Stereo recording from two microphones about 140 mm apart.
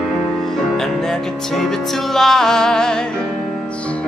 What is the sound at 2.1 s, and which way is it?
Music, 5° left (ahead or behind).